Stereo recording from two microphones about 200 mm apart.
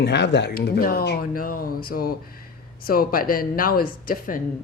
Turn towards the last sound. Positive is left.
turn(degrees=45)  # may be behind; listen again after turning